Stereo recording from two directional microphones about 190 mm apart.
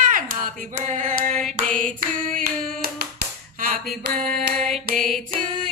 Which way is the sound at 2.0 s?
50° right (ahead or behind).